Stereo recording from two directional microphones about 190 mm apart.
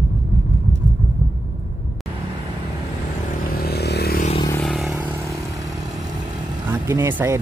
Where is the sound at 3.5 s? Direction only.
55° left (ahead or behind).